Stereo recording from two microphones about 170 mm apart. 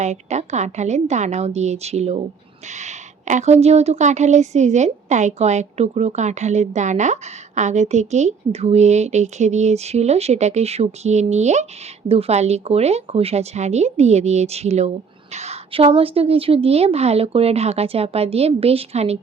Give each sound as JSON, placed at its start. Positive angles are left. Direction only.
{"t": 0.0, "sound": "a woman's voice", "side_deg": -40}